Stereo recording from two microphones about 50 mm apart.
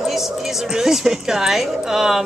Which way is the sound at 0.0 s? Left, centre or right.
Centre.